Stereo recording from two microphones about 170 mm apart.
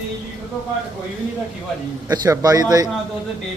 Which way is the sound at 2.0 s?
20° right (ahead or behind).